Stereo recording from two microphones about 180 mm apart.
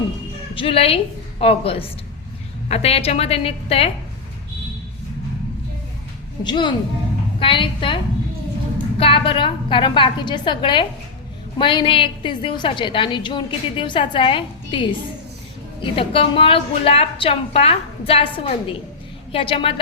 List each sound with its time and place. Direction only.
0.5 s a woman's voice: 30° left (ahead or behind)
6.4 s a woman's voice: 25° left (ahead or behind)